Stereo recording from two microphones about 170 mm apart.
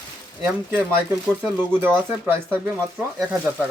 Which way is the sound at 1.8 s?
10° right (ahead or behind).